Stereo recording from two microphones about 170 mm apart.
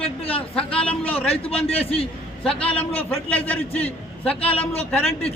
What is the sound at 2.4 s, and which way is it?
A man's voice, 5° left (ahead or behind).